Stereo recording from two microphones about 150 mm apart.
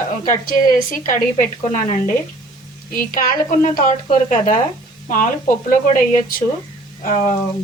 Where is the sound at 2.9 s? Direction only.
65° left (ahead or behind).